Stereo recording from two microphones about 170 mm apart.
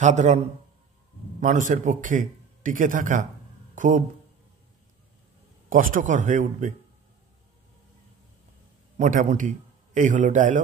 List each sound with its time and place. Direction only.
0.0 s a man's voice: 45° right (ahead or behind)
5.7 s a man's voice: 55° right (ahead or behind)
8.9 s a man's voice: 50° right (ahead or behind)